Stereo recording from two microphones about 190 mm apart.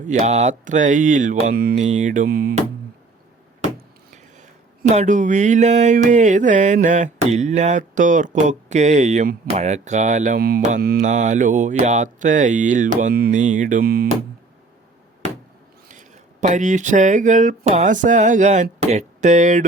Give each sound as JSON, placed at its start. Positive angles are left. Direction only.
{"t": 0.0, "sound": "speech", "side_deg": -40}
{"t": 3.8, "sound": "speech", "side_deg": -45}
{"t": 10.8, "sound": "mantra", "side_deg": -55}
{"t": 11.0, "sound": "speech", "side_deg": -40}
{"t": 15.9, "sound": "speech", "side_deg": -40}